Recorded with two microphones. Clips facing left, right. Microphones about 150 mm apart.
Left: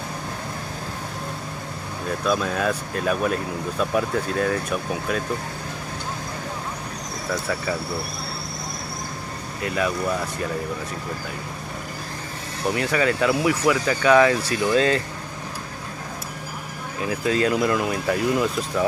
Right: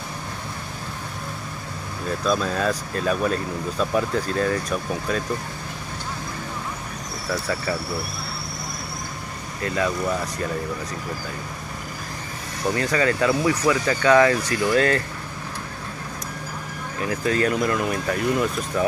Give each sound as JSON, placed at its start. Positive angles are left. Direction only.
{"t": 2.2, "sound": "speech", "side_deg": 10}
{"t": 9.6, "sound": "speech", "side_deg": 15}
{"t": 12.7, "sound": "speech", "side_deg": 10}
{"t": 17.1, "sound": "speech", "side_deg": 15}